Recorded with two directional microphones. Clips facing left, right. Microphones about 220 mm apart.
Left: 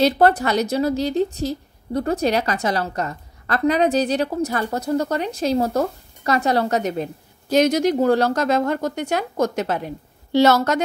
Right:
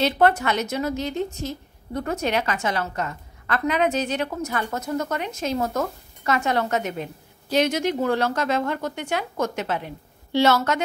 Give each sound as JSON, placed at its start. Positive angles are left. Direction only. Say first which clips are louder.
{"t": 0.0, "sound": "a woman's voice", "louder": "left 3 dB", "side_deg": 35}